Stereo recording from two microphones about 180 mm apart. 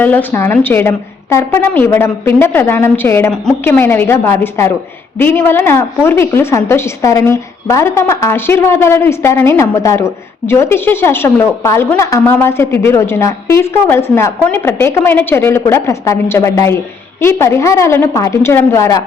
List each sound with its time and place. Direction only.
0.0 s a woman's voice: 10° left (ahead or behind)